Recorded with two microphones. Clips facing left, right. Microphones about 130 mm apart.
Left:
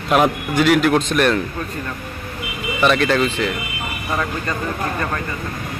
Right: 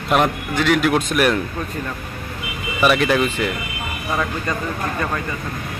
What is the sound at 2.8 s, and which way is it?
A man's voice, 10° right (ahead or behind).